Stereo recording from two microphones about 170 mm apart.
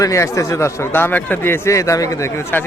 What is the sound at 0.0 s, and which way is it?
Speech, 20° left (ahead or behind).